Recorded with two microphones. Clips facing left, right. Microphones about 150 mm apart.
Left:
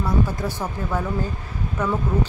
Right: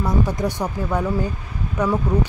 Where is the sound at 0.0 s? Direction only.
15° right (ahead or behind).